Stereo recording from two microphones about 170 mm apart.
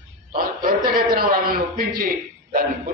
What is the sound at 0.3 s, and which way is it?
A man's voice, 60° right (ahead or behind).